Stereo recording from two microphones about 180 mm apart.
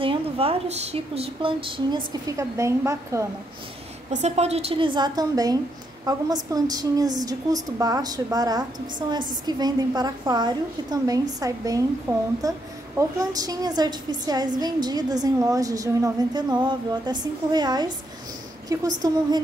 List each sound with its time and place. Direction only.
0.0 s a woman's voice: 30° right (ahead or behind); by 3.3 s 15° right (ahead or behind)
4.1 s a woman's voice: 40° right (ahead or behind); by 19.4 s 20° right (ahead or behind)